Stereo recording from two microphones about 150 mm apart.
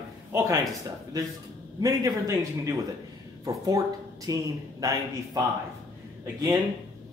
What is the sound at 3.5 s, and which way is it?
Speech, 25° right (ahead or behind).